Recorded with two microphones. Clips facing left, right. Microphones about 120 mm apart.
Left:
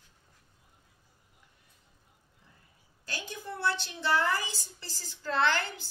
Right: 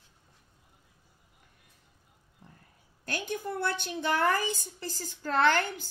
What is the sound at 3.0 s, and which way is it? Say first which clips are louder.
A woman's voice: right 6 dB; 55° right (ahead or behind).